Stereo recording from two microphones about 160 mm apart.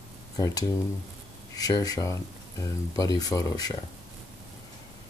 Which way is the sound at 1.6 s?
25° left (ahead or behind).